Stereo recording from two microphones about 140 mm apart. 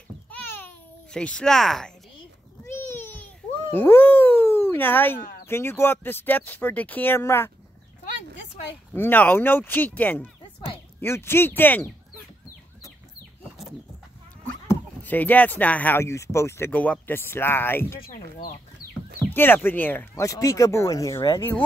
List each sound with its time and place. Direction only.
0.3 s a sound: 15° left (ahead or behind)
2.6 s a sound: 20° left (ahead or behind)
3.7 s dog: 15° left (ahead or behind)
5.5 s speech: 15° left (ahead or behind)
8.9 s speech: 15° left (ahead or behind)
14.7 s speech: 10° left (ahead or behind)
18.1 s speech: 85° left
19.3 s speech: 15° left (ahead or behind)